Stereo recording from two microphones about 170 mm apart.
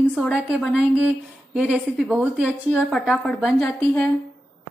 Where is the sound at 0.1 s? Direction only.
5° right (ahead or behind).